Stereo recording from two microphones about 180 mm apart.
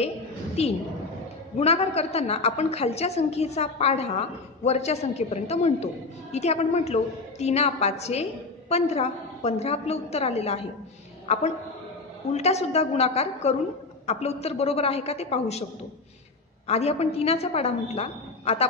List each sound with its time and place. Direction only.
0.6 s a woman's voice: 35° left (ahead or behind)
16.6 s a woman's voice: 35° left (ahead or behind)